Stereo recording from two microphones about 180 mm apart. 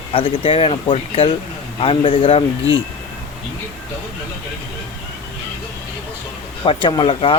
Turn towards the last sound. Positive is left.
turn(degrees=30)  # may be behind; listen again after turning